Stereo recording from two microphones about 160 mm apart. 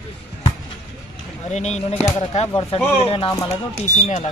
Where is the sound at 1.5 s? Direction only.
45° left (ahead or behind).